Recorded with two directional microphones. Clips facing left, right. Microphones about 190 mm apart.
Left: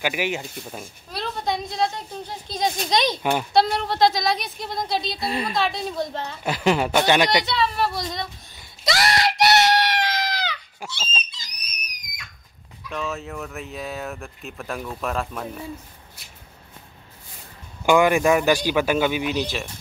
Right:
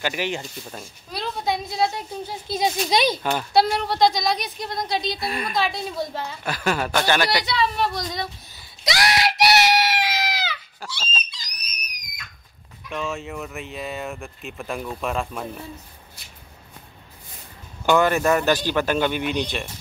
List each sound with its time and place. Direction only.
0.0 s speech: 10° left (ahead or behind); by 3.2 s 5° right (ahead or behind)
3.2 s speech: 15° left (ahead or behind)
3.5 s speech: centre (ahead or behind)
5.2 s speech: 25° left (ahead or behind)
5.6 s speech: centre (ahead or behind)
6.4 s speech: 20° left (ahead or behind)
7.4 s speech: centre (ahead or behind)
8.8 s screaming: centre (ahead or behind)
10.8 s a sound: 20° left (ahead or behind)
12.9 s speech: centre (ahead or behind)
17.8 s speech: 10° left (ahead or behind)